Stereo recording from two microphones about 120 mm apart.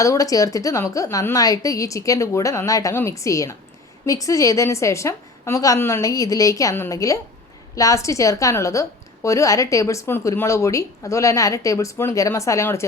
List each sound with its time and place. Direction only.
0.0 s a woman's voice: 25° left (ahead or behind)